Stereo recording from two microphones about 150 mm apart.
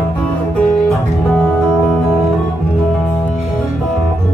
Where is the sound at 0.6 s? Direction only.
5° left (ahead or behind).